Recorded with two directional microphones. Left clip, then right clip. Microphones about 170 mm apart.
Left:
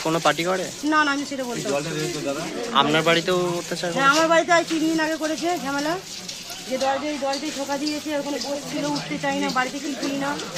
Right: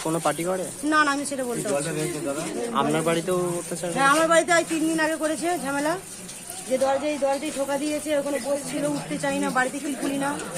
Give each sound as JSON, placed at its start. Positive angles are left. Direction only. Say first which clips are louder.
{"t": 0.1, "sound": "speech", "louder": "left 4 dB", "side_deg": 5}
{"t": 0.9, "sound": "speech", "louder": "left 1 dB", "side_deg": -20}
{"t": 2.7, "sound": "speech", "louder": "left 5 dB", "side_deg": 5}
{"t": 3.9, "sound": "speech", "louder": "left 1 dB", "side_deg": -20}
{"t": 9.2, "sound": "speech", "louder": "even", "side_deg": -15}